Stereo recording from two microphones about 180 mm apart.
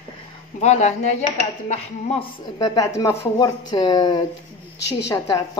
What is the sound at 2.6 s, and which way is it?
A woman's voice, 20° left (ahead or behind).